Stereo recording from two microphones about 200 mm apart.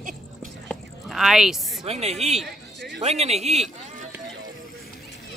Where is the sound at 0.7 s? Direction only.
Centre (ahead or behind).